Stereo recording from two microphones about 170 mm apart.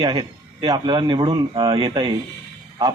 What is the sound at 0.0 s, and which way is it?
Speech, 25° right (ahead or behind).